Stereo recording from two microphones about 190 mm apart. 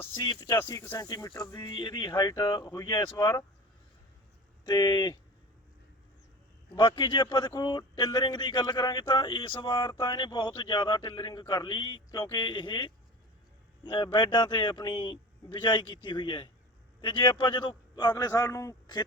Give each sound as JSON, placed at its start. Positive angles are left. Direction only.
{"t": 0.2, "sound": "a man's voice", "side_deg": 20}
{"t": 4.6, "sound": "a man's voice", "side_deg": 20}
{"t": 6.7, "sound": "a man's voice", "side_deg": 25}